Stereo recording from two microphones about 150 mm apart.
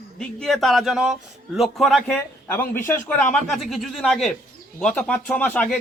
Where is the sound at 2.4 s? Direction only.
15° left (ahead or behind).